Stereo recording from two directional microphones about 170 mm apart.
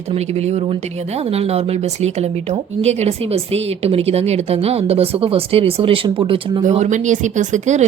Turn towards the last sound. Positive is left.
turn(degrees=-45)  # may be behind; listen again after turning